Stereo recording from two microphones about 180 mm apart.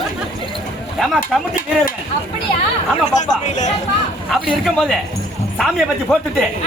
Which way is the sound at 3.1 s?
40° left (ahead or behind).